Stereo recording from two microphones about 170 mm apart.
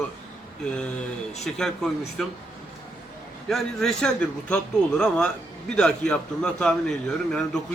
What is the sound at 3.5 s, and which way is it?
A man's voice, centre (ahead or behind).